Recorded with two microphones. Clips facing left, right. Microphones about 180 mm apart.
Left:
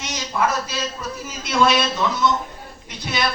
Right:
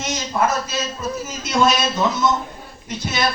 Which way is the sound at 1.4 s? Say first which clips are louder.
Even; 45° right (ahead or behind).